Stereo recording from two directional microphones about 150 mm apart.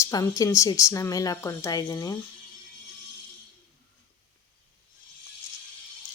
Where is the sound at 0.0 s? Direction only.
20° left (ahead or behind).